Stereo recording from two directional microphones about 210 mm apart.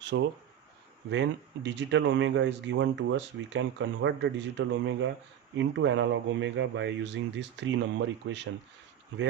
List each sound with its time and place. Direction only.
0.0 s speech: 60° right (ahead or behind)